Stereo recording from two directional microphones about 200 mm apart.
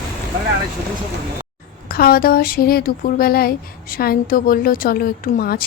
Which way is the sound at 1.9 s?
45° left (ahead or behind).